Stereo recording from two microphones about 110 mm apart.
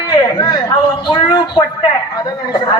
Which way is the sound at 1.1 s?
40° left (ahead or behind).